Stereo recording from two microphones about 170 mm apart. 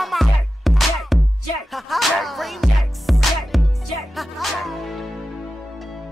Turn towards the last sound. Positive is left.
turn(degrees=0)  # may be behind; listen again after turning